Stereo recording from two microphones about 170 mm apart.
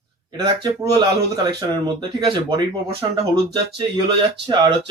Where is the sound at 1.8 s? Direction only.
25° right (ahead or behind).